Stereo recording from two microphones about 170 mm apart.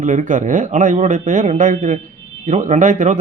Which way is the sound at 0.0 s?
45° right (ahead or behind).